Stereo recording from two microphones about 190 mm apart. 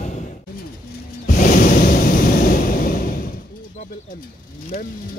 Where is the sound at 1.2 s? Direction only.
45° left (ahead or behind).